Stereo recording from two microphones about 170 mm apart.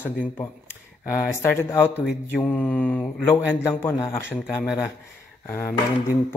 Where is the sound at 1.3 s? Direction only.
15° left (ahead or behind).